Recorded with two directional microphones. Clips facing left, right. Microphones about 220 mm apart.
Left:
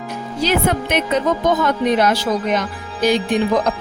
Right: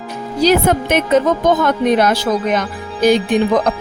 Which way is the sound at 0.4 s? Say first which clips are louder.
Right 5 dB; 45° right (ahead or behind).